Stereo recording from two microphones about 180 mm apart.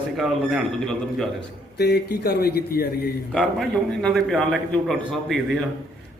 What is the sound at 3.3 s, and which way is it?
A man's voice, 5° left (ahead or behind).